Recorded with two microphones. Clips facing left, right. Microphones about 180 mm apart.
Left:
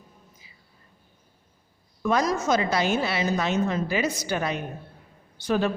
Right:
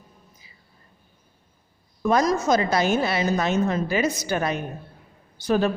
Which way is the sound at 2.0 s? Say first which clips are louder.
Right 3 dB; 40° right (ahead or behind).